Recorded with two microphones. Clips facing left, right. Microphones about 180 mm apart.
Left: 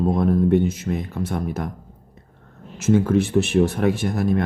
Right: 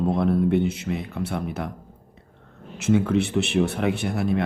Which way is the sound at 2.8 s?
45° left (ahead or behind).